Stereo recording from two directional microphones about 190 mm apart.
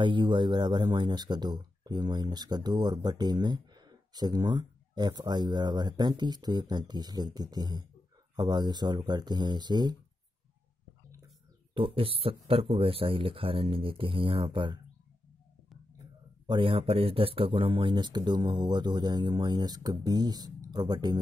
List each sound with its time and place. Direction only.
0.0 s speech: 25° right (ahead or behind)
11.7 s speech: 30° right (ahead or behind)
16.4 s speech: 25° right (ahead or behind)